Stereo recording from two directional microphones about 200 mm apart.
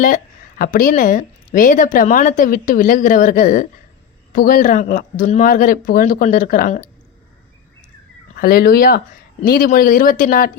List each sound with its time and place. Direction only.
0.6 s speech: 40° left (ahead or behind)
8.4 s speech: 50° left (ahead or behind)